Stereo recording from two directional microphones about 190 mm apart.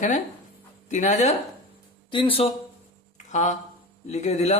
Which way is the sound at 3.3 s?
40° left (ahead or behind).